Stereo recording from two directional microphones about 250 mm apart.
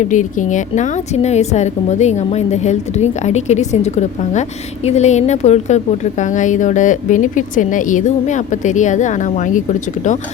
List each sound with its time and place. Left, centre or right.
0.0 s a woman's voice: left